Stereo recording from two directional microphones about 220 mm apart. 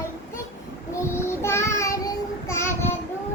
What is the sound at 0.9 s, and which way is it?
Child singing, 10° left (ahead or behind).